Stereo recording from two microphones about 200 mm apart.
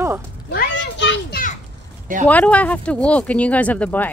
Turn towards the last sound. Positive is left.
turn(degrees=10)  # may be behind; listen again after turning